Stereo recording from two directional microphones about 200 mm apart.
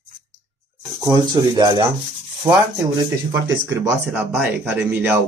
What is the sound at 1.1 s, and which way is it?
Speech, 20° right (ahead or behind).